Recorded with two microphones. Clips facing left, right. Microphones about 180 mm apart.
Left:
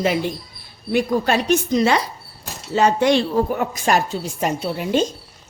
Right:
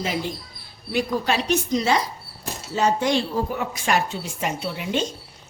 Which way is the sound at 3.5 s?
45° left (ahead or behind).